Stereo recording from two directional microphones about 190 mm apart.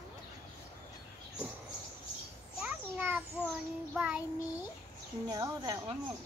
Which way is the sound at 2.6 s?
10° right (ahead or behind).